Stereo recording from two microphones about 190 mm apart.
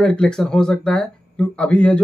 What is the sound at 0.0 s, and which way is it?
Speech, 5° left (ahead or behind).